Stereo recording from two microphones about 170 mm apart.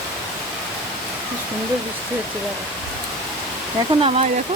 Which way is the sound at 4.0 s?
35° right (ahead or behind).